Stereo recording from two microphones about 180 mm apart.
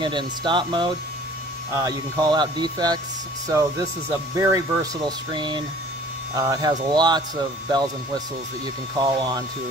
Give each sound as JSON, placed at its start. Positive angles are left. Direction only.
{"t": 0.0, "sound": "speech", "side_deg": -25}